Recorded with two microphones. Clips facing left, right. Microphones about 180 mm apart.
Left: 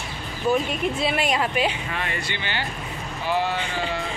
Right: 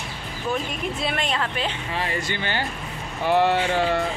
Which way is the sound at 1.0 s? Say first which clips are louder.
Left 2 dB; centre (ahead or behind).